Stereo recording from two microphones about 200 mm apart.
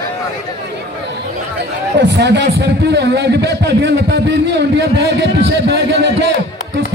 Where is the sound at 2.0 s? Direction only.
60° right (ahead or behind).